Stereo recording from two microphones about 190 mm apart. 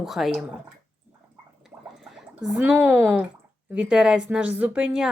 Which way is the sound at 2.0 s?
Centre (ahead or behind).